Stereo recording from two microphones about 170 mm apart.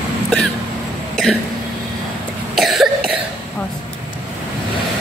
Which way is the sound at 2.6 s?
Centre (ahead or behind).